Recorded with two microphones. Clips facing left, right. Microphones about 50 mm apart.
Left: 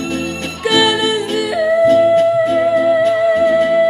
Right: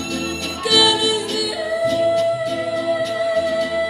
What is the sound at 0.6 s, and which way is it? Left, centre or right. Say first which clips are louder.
Music: left 3 dB; left.